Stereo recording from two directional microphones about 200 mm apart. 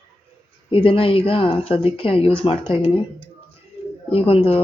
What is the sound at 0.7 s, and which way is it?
Speech, 25° left (ahead or behind).